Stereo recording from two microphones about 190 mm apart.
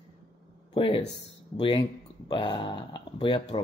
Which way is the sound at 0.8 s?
30° left (ahead or behind).